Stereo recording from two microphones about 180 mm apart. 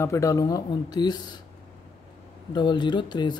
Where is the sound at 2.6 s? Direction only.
25° left (ahead or behind).